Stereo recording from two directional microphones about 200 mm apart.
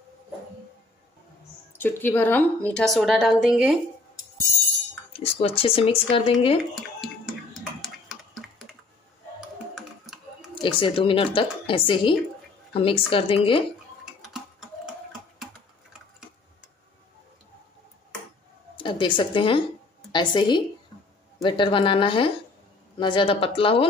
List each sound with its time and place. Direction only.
1.8 s a woman's voice: 10° left (ahead or behind)
5.2 s speech: 30° left (ahead or behind)
6.7 s a sound: centre (ahead or behind)
7.8 s typing: centre (ahead or behind)
9.8 s computer keyboard: centre (ahead or behind)
10.5 s speech: 25° left (ahead or behind)
14.2 s typing: centre (ahead or behind)
18.8 s a woman's voice: 25° left (ahead or behind)